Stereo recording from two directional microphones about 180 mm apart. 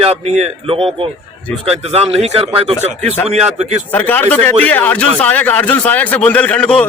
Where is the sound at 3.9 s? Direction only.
10° left (ahead or behind).